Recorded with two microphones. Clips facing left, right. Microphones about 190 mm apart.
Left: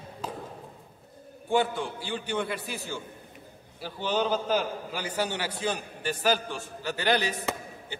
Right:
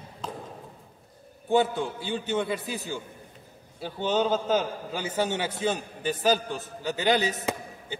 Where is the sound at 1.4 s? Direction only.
20° right (ahead or behind).